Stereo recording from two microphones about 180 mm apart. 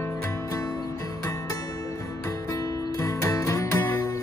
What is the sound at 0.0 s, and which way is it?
Music, 15° left (ahead or behind).